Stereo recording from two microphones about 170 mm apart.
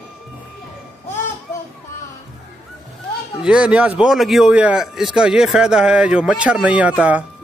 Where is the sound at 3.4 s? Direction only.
5° right (ahead or behind).